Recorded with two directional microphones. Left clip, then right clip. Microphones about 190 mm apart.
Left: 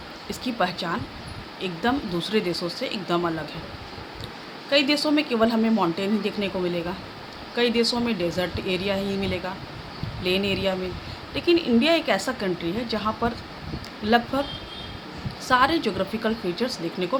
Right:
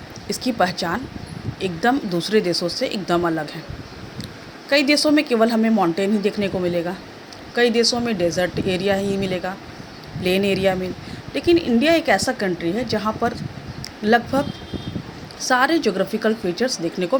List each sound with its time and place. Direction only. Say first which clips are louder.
0.3 s a woman's voice: right 5 dB; 30° right (ahead or behind)
4.7 s a woman's voice: right 5 dB; 30° right (ahead or behind)
15.4 s a woman's voice: right 3 dB; 25° right (ahead or behind)